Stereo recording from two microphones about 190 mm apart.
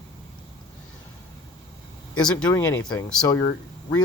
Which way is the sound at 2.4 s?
15° left (ahead or behind).